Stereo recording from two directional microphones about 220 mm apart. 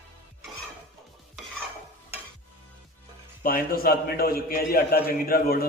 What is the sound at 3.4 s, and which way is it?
A man's voice, 40° left (ahead or behind).